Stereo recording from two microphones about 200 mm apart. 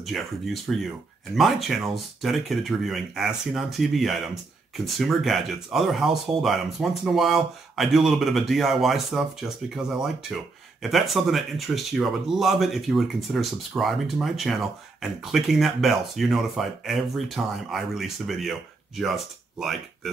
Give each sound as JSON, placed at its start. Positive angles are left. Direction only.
{"t": 0.0, "sound": "speech", "side_deg": 0}